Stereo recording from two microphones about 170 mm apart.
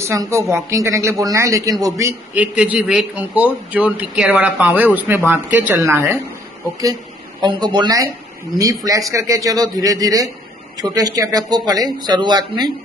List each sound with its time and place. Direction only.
0.0 s a man's voice: 20° right (ahead or behind)
7.4 s speech: 25° right (ahead or behind)